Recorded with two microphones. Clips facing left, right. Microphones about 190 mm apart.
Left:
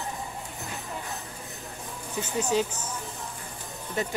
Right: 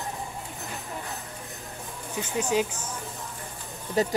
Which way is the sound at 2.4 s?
10° right (ahead or behind).